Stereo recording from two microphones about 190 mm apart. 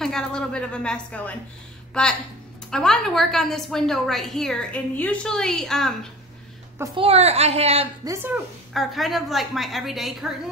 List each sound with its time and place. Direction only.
0.0 s a woman's voice: 5° left (ahead or behind)
2.7 s a woman's voice: centre (ahead or behind)
7.0 s a woman's voice: 30° right (ahead or behind)
8.0 s speech: 15° right (ahead or behind)
8.7 s a woman's voice: centre (ahead or behind)